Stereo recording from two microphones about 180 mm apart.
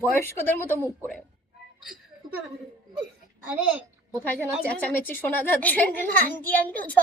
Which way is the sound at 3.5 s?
5° right (ahead or behind).